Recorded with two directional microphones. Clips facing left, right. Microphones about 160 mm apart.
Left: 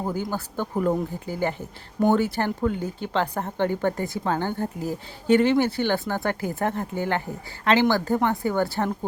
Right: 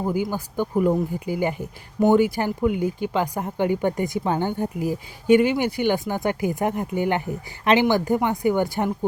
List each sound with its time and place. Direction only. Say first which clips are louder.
0.1 s speech: right 3 dB; 10° right (ahead or behind)